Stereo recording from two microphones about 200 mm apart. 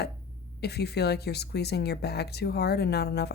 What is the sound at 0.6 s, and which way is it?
Speech, 55° left (ahead or behind).